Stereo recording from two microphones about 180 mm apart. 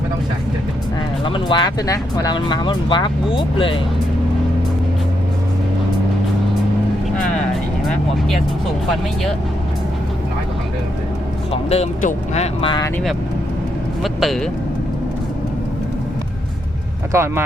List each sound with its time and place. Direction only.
1.2 s speech: 25° left (ahead or behind)
11.5 s speech: 35° left (ahead or behind)
14.0 s speech: centre (ahead or behind)
17.1 s speech: 15° right (ahead or behind)